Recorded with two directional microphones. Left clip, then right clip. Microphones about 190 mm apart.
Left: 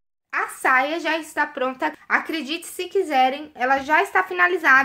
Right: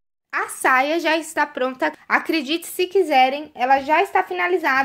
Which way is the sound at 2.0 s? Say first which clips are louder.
Right 3 dB; 50° right (ahead or behind).